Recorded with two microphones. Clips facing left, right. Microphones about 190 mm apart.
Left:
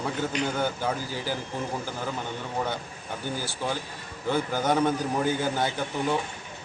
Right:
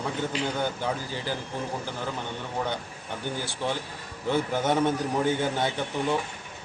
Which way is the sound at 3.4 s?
Centre (ahead or behind).